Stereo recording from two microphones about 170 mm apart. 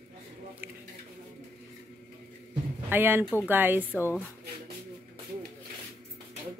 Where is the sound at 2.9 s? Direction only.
10° right (ahead or behind).